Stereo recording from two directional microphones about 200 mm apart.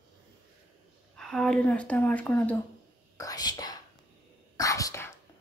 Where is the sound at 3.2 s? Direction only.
20° left (ahead or behind).